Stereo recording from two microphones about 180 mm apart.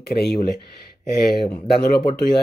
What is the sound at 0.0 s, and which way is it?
Speech, 60° left (ahead or behind).